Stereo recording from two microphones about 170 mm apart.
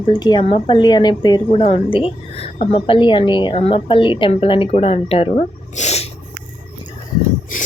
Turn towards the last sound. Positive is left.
turn(degrees=55)  # may be behind; listen again after turning